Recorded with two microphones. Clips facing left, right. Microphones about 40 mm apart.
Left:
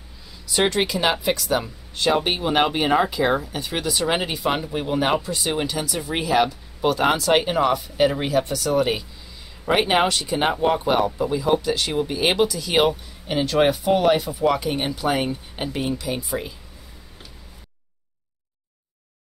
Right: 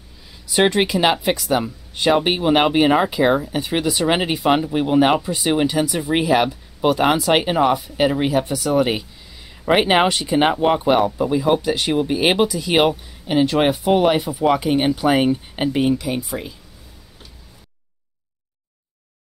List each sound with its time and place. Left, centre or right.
0.5 s speech: centre
15.9 s speech: centre